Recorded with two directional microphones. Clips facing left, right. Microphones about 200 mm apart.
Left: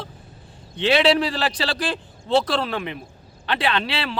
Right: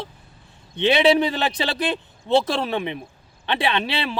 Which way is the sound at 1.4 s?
20° right (ahead or behind).